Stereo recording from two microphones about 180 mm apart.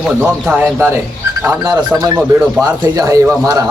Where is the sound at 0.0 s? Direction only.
5° right (ahead or behind).